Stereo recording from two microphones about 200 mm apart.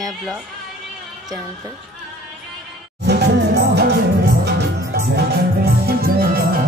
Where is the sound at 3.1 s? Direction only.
55° right (ahead or behind).